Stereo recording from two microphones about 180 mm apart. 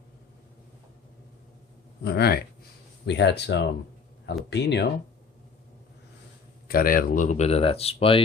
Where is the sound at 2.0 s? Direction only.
65° left (ahead or behind).